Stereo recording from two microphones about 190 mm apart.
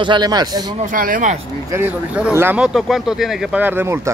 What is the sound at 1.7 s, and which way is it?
Speech, 10° right (ahead or behind).